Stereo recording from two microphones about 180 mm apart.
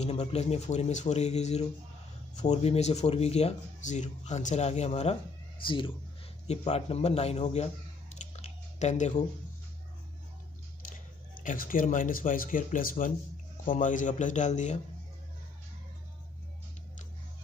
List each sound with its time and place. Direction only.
0.0 s a man's voice: 35° left (ahead or behind)
11.4 s speech: 50° left (ahead or behind)